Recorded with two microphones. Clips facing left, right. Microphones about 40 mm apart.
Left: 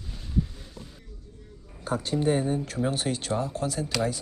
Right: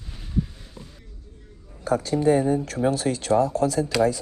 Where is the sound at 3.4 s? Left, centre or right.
Right.